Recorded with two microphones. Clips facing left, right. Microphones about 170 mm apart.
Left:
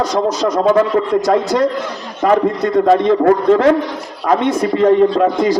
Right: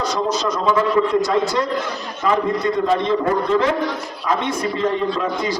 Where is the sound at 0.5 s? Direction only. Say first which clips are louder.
Left 5 dB; 55° left (ahead or behind).